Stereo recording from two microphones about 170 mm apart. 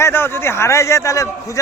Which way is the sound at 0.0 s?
15° left (ahead or behind).